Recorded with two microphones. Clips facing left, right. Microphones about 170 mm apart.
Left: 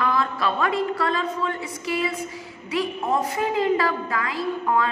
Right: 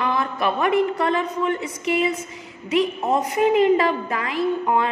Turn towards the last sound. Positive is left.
turn(degrees=-20)  # may be behind; listen again after turning